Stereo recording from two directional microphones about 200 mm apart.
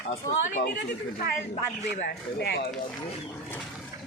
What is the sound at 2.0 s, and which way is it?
Speech, 55° left (ahead or behind).